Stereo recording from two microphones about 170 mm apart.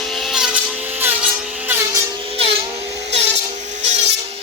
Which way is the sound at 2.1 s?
35° right (ahead or behind).